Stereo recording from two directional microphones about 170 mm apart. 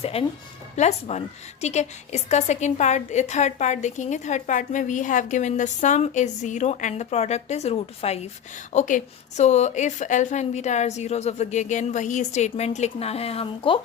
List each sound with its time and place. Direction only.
0.0 s a woman's voice: 35° left (ahead or behind)